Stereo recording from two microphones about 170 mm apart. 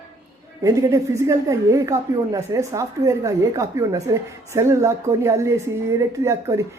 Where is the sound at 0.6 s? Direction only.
20° right (ahead or behind).